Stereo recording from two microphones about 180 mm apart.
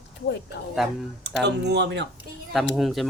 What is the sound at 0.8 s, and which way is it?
Speech, centre (ahead or behind).